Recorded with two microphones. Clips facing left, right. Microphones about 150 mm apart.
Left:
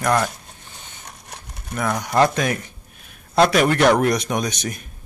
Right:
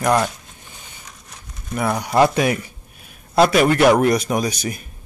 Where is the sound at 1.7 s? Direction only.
10° right (ahead or behind).